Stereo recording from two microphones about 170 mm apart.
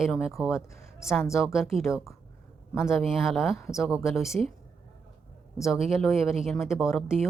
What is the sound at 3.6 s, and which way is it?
Speech, 15° left (ahead or behind).